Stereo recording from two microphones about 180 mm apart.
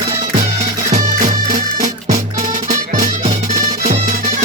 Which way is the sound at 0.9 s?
45° right (ahead or behind).